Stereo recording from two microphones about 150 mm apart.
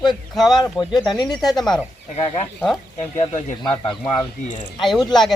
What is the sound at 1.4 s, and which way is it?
Speech, centre (ahead or behind).